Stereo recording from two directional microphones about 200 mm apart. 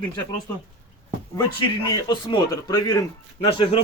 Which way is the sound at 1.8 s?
20° left (ahead or behind).